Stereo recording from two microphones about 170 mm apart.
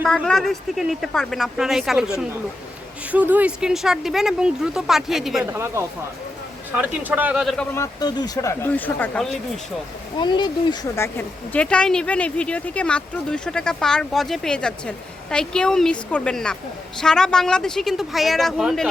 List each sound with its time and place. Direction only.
0.0 s speech: 5° left (ahead or behind)
5.5 s speech: 15° right (ahead or behind); by 7.7 s 5° left (ahead or behind)
7.8 s speech: 25° left (ahead or behind); by 9.3 s 5° left (ahead or behind)
10.2 s speech: 25° left (ahead or behind)
10.9 s speech: 15° left (ahead or behind); by 18.9 s centre (ahead or behind)